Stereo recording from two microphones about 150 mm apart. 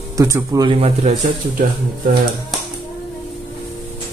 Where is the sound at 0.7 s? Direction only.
40° right (ahead or behind).